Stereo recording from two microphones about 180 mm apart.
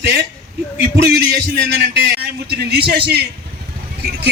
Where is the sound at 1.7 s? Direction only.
70° right (ahead or behind).